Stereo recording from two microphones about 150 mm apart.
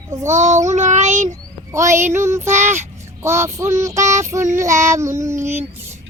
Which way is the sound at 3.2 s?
15° right (ahead or behind).